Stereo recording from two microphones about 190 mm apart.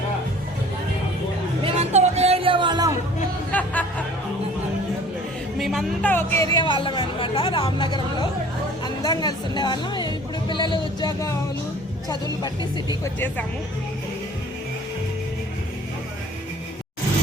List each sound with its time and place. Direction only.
1.6 s music: 35° right (ahead or behind)
3.5 s music: 10° left (ahead or behind)
5.5 s speech: centre (ahead or behind); by 11.3 s 20° left (ahead or behind)
13.1 s speech: 10° left (ahead or behind)